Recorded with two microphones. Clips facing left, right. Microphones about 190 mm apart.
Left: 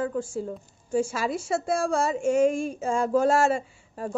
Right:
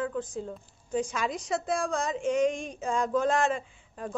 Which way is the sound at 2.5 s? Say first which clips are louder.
Left 5 dB; 5° left (ahead or behind).